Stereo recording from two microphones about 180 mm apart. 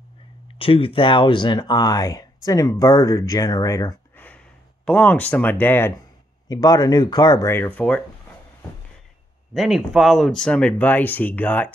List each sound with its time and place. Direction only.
0.6 s speech: 30° left (ahead or behind)
7.5 s speech: 10° left (ahead or behind)
9.5 s speech: centre (ahead or behind)